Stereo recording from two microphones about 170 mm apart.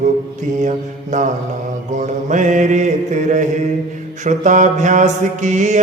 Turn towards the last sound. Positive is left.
turn(degrees=-45)  # may be behind; listen again after turning